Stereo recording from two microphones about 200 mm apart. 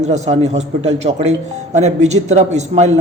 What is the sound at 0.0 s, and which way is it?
A man's voice, 35° right (ahead or behind).